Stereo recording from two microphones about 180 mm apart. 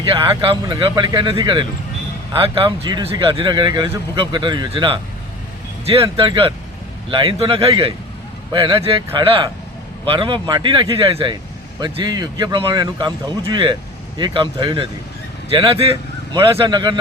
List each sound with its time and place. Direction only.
0.0 s speech: 25° right (ahead or behind)